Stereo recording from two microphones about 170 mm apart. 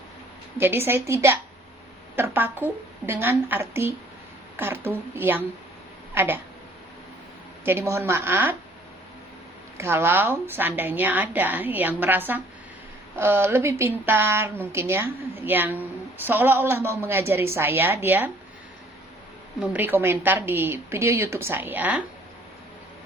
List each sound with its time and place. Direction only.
0.6 s a woman's voice: 15° right (ahead or behind)
7.6 s a woman's voice: 15° right (ahead or behind)
9.7 s a woman's voice: 15° right (ahead or behind)
19.5 s a woman's voice: 10° right (ahead or behind)